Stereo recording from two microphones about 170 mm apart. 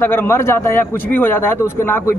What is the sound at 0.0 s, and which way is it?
A man's voice, 10° left (ahead or behind).